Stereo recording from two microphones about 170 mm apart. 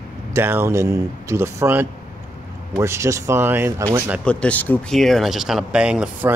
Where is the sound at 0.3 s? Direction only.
15° right (ahead or behind).